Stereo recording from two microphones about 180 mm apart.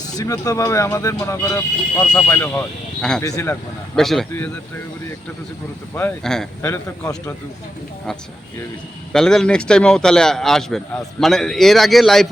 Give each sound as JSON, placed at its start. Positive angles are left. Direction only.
{"t": 0.0, "sound": "a man's voice", "side_deg": 20}
{"t": 3.2, "sound": "speech", "side_deg": 15}
{"t": 3.9, "sound": "a man's voice", "side_deg": 0}
{"t": 5.9, "sound": "speech", "side_deg": 10}
{"t": 9.1, "sound": "a man's voice", "side_deg": 5}